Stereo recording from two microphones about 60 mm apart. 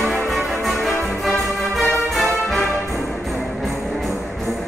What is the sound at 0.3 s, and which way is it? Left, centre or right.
Music, centre.